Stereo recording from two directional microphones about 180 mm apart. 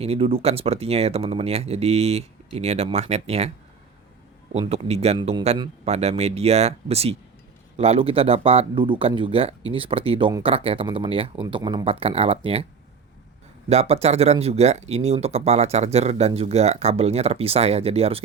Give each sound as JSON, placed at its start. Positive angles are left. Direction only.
{"t": 0.0, "sound": "speech", "side_deg": -35}
{"t": 4.7, "sound": "speech", "side_deg": -35}
{"t": 13.7, "sound": "speech", "side_deg": -35}